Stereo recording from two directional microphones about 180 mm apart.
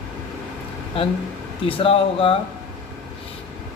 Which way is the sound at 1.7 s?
30° left (ahead or behind).